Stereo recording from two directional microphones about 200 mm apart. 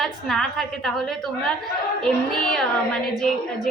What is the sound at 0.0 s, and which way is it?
A woman's voice, centre (ahead or behind).